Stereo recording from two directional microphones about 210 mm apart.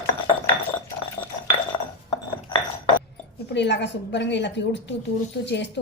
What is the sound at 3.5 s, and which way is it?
A woman's voice, 55° left (ahead or behind).